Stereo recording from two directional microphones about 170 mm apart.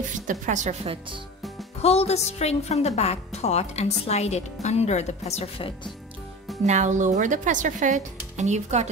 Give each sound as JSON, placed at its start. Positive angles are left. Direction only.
{"t": 0.3, "sound": "speech", "side_deg": -45}
{"t": 1.8, "sound": "a woman's voice", "side_deg": 40}
{"t": 6.6, "sound": "speech", "side_deg": -45}